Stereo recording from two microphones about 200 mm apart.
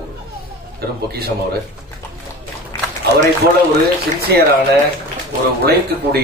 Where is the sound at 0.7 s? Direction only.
50° right (ahead or behind).